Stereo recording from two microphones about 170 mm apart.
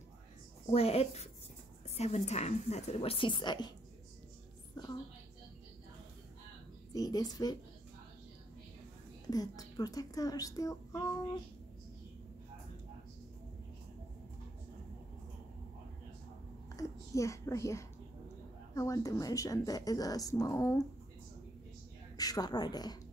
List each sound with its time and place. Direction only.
0.7 s a woman's voice: 35° left (ahead or behind)
4.8 s a sound: 20° left (ahead or behind)
6.9 s speech: 20° left (ahead or behind)
9.3 s speech: 20° left (ahead or behind)
16.7 s a sound: 20° left (ahead or behind)
18.8 s speech: 20° left (ahead or behind)
22.1 s a woman's voice: 20° left (ahead or behind)